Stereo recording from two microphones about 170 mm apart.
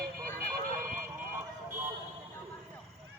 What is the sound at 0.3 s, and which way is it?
Vehicle, 55° right (ahead or behind).